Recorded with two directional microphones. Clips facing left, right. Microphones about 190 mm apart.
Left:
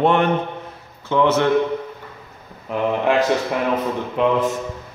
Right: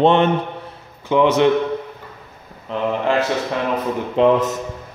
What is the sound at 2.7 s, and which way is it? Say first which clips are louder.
Speech: left 1 dB; 10° left (ahead or behind).